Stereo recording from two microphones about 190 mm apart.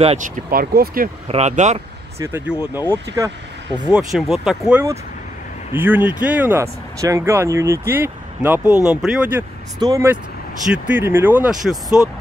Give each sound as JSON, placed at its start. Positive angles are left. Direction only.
{"t": 0.0, "sound": "speech", "side_deg": -30}
{"t": 0.5, "sound": "speech", "side_deg": -50}
{"t": 1.3, "sound": "speech", "side_deg": -35}
{"t": 2.1, "sound": "speech", "side_deg": -15}
{"t": 3.9, "sound": "speech", "side_deg": 0}
{"t": 9.8, "sound": "speech", "side_deg": -15}